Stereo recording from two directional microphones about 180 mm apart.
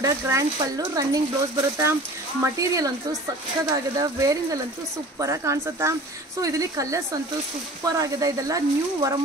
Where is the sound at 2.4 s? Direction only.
20° right (ahead or behind).